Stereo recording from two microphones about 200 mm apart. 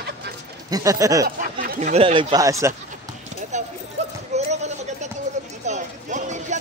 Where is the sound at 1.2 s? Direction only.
45° right (ahead or behind); by 2.7 s 15° right (ahead or behind).